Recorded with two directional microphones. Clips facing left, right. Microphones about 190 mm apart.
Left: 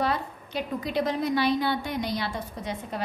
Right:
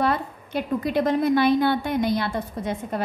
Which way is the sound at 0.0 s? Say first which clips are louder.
Right 4 dB; 55° right (ahead or behind).